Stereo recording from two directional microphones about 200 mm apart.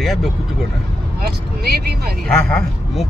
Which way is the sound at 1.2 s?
50° right (ahead or behind).